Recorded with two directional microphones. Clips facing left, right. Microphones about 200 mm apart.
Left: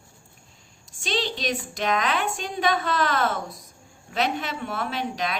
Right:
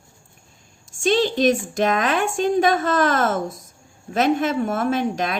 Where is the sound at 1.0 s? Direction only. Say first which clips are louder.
Right 10 dB; 50° right (ahead or behind).